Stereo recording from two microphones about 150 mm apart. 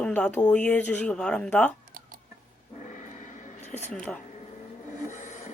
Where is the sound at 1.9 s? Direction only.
70° right (ahead or behind).